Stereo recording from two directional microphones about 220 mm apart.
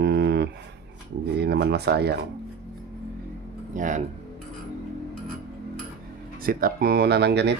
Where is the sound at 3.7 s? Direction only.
35° right (ahead or behind).